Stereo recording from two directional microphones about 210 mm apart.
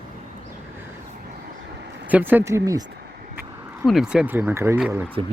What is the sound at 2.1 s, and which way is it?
Speech, 10° right (ahead or behind).